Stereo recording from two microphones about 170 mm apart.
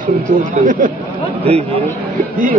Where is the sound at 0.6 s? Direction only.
50° right (ahead or behind).